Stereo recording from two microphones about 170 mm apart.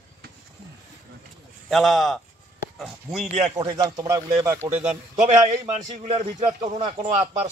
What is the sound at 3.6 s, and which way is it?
A man's voice, 20° right (ahead or behind).